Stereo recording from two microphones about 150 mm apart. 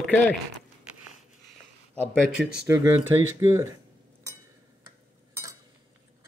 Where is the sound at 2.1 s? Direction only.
5° left (ahead or behind).